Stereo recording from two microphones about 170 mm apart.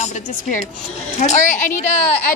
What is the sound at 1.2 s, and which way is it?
Speech, 45° left (ahead or behind).